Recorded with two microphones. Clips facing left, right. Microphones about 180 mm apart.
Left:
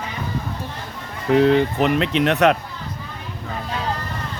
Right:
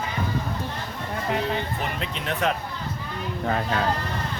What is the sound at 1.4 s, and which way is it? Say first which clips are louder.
Speech: left 12 dB; 70° left (ahead or behind).